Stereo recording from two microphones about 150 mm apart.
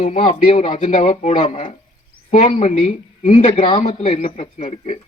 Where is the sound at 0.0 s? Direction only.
45° left (ahead or behind).